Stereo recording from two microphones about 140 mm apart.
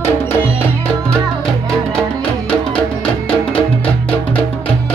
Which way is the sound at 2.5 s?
5° left (ahead or behind).